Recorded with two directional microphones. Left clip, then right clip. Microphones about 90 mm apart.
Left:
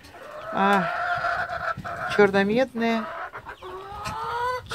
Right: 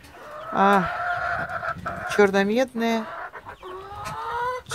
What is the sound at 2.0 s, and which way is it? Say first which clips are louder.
Speech: even; 35° right (ahead or behind).